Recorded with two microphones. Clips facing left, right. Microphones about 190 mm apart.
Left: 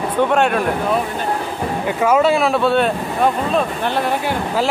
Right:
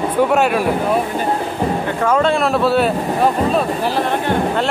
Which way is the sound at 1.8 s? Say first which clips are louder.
Left 3 dB; 10° left (ahead or behind).